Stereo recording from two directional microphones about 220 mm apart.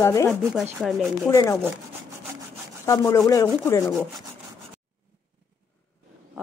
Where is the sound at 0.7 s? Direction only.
Centre (ahead or behind).